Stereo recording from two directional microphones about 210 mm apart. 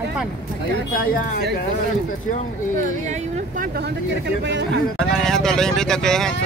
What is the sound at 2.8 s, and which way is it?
Speech, 40° right (ahead or behind).